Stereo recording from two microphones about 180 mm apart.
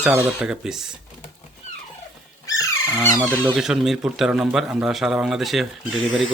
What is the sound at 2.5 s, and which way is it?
Dog, 20° left (ahead or behind).